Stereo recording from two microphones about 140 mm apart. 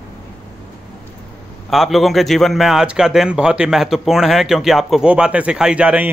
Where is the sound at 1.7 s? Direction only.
Centre (ahead or behind).